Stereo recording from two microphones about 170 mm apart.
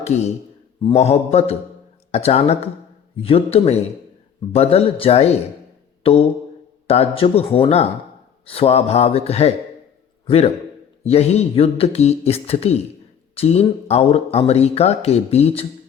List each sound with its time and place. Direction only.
0.1 s speech: 40° left (ahead or behind)
6.0 s a sound: 35° left (ahead or behind)
6.8 s speech: 35° left (ahead or behind)